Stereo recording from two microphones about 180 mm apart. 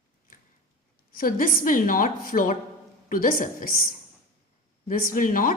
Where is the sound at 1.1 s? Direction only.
55° left (ahead or behind).